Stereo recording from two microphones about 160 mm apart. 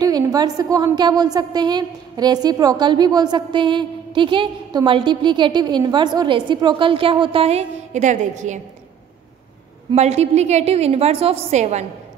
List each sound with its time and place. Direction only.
0.0 s a woman's voice: 25° right (ahead or behind); by 8.5 s 50° right (ahead or behind)
9.9 s a woman's voice: 45° right (ahead or behind)